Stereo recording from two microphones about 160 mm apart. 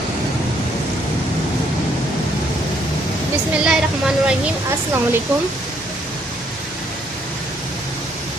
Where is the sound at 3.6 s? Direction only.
5° right (ahead or behind).